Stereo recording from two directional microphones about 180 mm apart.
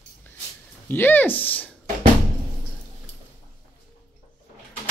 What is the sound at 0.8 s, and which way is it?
Speech, 10° left (ahead or behind).